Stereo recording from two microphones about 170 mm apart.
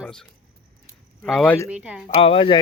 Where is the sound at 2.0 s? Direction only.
35° left (ahead or behind).